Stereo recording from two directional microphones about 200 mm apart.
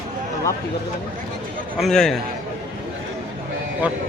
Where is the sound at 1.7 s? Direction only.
Centre (ahead or behind).